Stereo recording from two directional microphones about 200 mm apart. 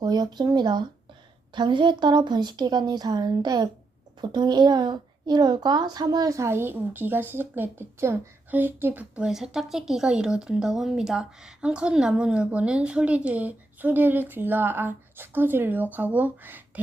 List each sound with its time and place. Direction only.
0.0 s a woman's voice: 20° right (ahead or behind)